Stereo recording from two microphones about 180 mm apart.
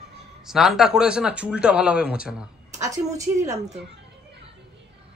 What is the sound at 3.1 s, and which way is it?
Speech, 20° right (ahead or behind).